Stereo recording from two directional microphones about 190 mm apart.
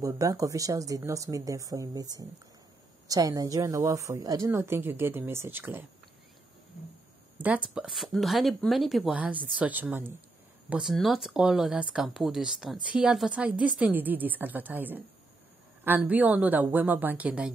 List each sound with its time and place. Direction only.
0.0 s a woman's voice: 15° right (ahead or behind)
7.3 s a woman's voice: 10° right (ahead or behind)